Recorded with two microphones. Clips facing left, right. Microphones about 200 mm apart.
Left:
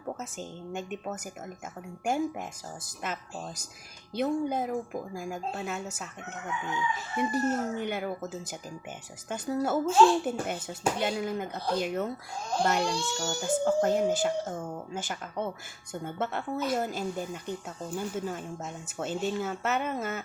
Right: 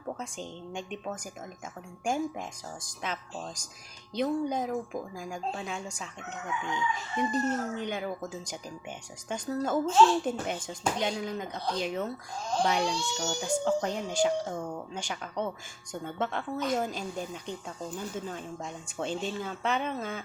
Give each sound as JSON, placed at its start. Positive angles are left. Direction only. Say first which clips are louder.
{"t": 0.2, "sound": "speech", "louder": "even", "side_deg": 5}